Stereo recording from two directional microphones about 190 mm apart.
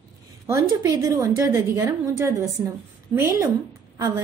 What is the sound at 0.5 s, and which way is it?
A woman's voice, 15° right (ahead or behind).